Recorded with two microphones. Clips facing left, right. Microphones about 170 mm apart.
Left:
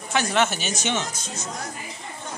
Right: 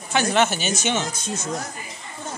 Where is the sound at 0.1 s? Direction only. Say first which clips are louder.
Right 2 dB; centre (ahead or behind).